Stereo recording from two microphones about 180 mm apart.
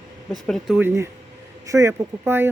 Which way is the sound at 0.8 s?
15° right (ahead or behind).